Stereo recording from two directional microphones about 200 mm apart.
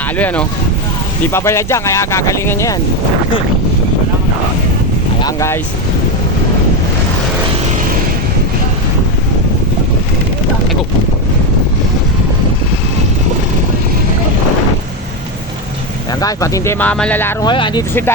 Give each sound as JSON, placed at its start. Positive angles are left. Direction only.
{"t": 0.2, "sound": "speech", "side_deg": 5}
{"t": 5.2, "sound": "speech", "side_deg": 15}
{"t": 16.2, "sound": "speech", "side_deg": 15}
{"t": 17.4, "sound": "speech", "side_deg": 20}